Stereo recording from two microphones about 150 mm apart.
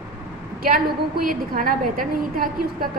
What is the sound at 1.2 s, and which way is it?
A woman's voice, 70° right (ahead or behind).